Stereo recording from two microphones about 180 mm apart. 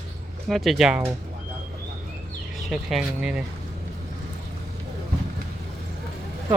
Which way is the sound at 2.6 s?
Centre (ahead or behind).